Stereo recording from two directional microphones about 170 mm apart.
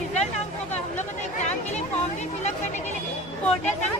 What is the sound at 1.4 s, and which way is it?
Speech, 45° left (ahead or behind).